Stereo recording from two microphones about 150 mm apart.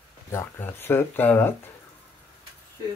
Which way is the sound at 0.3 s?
15° left (ahead or behind).